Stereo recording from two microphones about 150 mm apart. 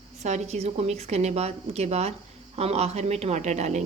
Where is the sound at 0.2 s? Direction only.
50° right (ahead or behind).